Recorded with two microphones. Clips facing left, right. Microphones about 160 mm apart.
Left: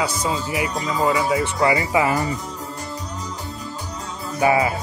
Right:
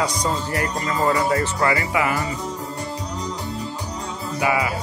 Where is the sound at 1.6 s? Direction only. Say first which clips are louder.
Left 2 dB; 20° left (ahead or behind).